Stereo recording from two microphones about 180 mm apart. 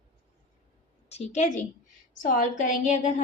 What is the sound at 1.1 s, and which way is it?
A woman's voice, 40° left (ahead or behind).